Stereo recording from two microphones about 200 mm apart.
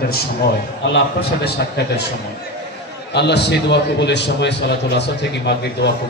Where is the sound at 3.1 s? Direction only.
60° left (ahead or behind).